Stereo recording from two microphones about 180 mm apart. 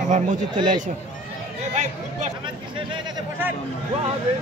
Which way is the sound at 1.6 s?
40° right (ahead or behind).